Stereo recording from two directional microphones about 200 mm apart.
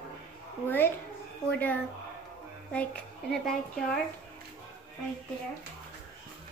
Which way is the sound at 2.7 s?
5° left (ahead or behind).